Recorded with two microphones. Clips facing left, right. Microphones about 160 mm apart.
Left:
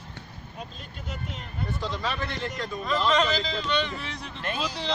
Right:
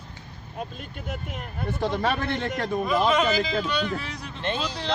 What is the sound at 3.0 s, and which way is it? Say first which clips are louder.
Speech: right 2 dB; 5° right (ahead or behind).